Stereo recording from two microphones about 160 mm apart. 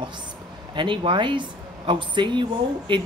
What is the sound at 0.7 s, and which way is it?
Speech, 30° right (ahead or behind).